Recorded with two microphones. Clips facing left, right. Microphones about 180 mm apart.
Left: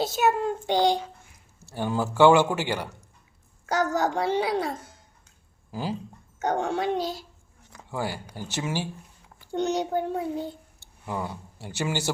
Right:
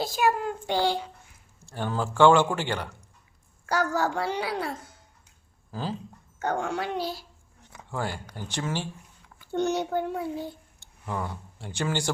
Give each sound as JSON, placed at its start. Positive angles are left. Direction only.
{"t": 0.0, "sound": "a child's voice", "side_deg": 25}
{"t": 3.9, "sound": "a child's voice", "side_deg": 20}
{"t": 5.7, "sound": "a man's voice", "side_deg": 10}
{"t": 7.9, "sound": "a man's voice", "side_deg": 5}
{"t": 11.0, "sound": "speech", "side_deg": 10}